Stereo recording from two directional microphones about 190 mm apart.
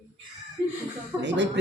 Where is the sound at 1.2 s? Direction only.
65° right (ahead or behind).